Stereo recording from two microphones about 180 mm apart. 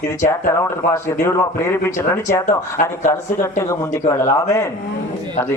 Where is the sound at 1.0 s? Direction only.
15° left (ahead or behind).